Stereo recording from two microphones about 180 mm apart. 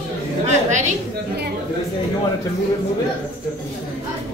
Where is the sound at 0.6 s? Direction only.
40° right (ahead or behind).